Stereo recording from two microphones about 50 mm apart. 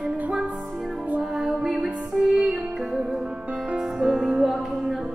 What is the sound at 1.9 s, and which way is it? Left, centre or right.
Music, right.